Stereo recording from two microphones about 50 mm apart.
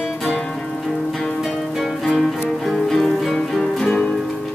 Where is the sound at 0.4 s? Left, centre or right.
Centre.